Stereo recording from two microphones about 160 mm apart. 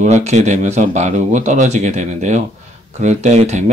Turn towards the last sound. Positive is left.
turn(degrees=-45)  # may be behind; listen again after turning